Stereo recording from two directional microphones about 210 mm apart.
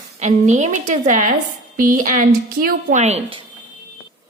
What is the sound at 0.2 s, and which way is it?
A woman's voice, 35° right (ahead or behind).